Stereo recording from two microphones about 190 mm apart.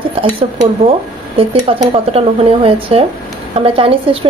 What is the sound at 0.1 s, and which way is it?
A woman's voice, 30° right (ahead or behind).